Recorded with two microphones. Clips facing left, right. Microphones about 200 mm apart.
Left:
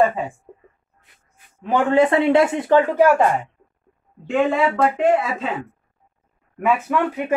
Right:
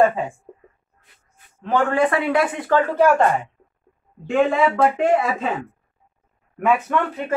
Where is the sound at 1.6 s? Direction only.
20° left (ahead or behind).